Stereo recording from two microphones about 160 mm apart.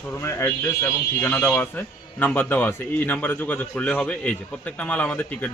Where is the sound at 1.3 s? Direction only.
5° left (ahead or behind).